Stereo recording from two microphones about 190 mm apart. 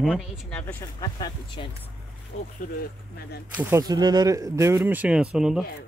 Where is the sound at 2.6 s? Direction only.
50° left (ahead or behind).